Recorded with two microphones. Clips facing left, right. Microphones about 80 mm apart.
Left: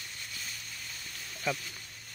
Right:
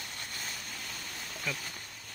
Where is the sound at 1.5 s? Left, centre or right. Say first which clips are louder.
Left 5 dB; left.